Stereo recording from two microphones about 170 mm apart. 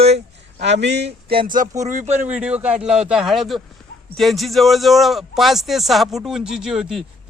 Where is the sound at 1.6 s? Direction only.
50° right (ahead or behind).